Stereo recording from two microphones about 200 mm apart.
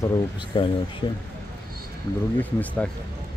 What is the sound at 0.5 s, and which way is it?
Speech, 20° left (ahead or behind).